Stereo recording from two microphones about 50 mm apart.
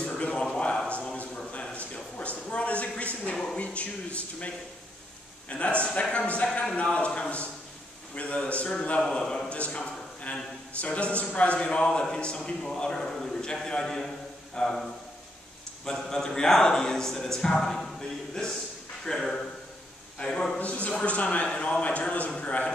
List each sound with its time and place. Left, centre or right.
0.2 s a sound: left
5.5 s a man's voice: left
9.1 s a man's voice: centre
9.5 s a man's voice: left; by 19.3 s centre
20.2 s a man's voice: left